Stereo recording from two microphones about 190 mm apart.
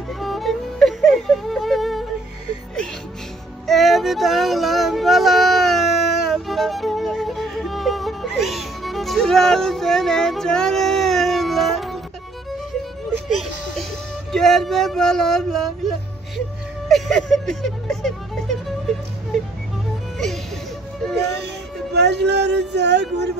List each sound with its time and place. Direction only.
0.2 s music: centre (ahead or behind)
3.6 s music: centre (ahead or behind)
13.3 s a sound: centre (ahead or behind)
14.3 s speech: centre (ahead or behind)
16.9 s music: centre (ahead or behind)
21.9 s a sound: 65° right (ahead or behind)